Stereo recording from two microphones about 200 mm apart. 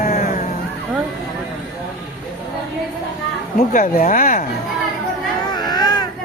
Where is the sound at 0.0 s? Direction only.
45° left (ahead or behind).